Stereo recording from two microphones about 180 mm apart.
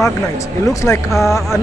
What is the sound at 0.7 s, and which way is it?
Speech, 15° left (ahead or behind).